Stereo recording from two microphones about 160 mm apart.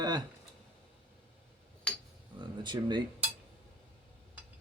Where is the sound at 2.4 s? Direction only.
30° right (ahead or behind).